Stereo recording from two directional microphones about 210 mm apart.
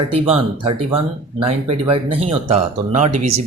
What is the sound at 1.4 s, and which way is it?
Speech, 25° right (ahead or behind).